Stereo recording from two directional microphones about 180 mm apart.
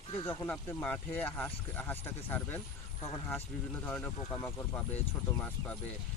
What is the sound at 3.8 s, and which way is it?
Speech, 10° left (ahead or behind).